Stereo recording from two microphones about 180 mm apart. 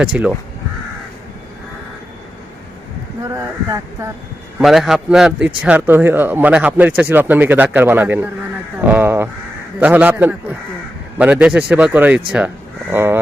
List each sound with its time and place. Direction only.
0.0 s a man's voice: 5° right (ahead or behind)
3.2 s speech: 15° right (ahead or behind)
4.6 s a man's voice: centre (ahead or behind)